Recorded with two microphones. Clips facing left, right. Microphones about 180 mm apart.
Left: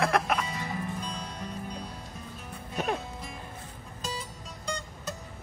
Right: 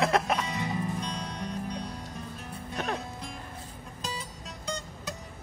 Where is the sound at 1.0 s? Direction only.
5° left (ahead or behind).